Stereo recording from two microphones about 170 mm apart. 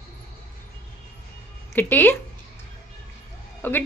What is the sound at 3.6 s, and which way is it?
Speech, 10° left (ahead or behind).